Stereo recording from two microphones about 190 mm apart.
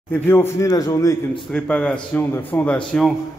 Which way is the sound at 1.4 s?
5° left (ahead or behind).